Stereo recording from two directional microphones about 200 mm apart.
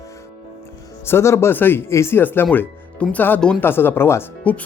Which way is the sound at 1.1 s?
15° left (ahead or behind).